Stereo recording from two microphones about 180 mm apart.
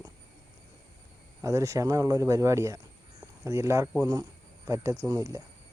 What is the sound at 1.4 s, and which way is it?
Speech, 15° right (ahead or behind).